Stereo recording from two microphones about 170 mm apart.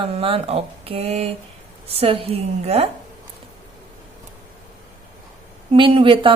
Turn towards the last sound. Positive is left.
turn(degrees=-30)  # may be behind; listen again after turning